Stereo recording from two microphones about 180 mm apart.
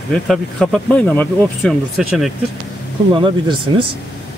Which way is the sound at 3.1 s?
25° right (ahead or behind).